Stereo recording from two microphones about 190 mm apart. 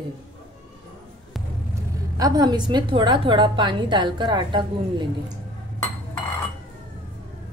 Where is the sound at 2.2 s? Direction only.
20° right (ahead or behind).